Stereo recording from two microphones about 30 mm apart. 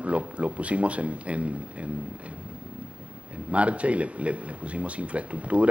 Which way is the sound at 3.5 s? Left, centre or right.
Right.